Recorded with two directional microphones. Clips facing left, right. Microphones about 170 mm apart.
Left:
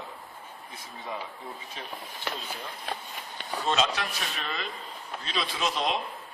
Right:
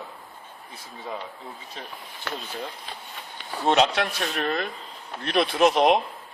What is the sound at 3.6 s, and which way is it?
Speech, 60° right (ahead or behind).